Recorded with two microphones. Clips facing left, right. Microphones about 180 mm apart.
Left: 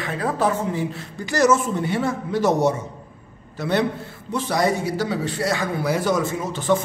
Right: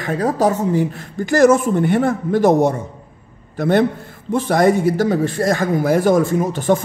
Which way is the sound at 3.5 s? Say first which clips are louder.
Right 6 dB; 50° right (ahead or behind).